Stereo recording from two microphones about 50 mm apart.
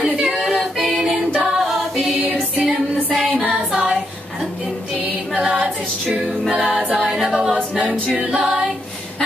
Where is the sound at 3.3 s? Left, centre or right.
Centre.